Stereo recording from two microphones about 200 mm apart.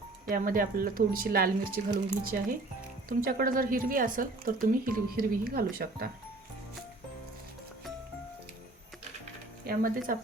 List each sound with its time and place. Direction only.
0.3 s speech: 45° right (ahead or behind)
9.6 s speech: 45° right (ahead or behind)